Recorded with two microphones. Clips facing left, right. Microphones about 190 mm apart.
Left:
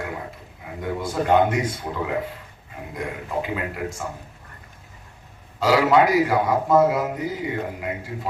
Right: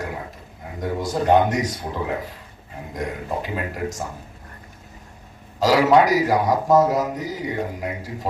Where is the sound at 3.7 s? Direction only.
40° right (ahead or behind).